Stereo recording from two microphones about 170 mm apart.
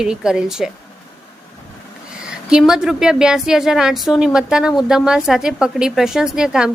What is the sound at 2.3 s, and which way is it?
A woman's voice, 5° right (ahead or behind).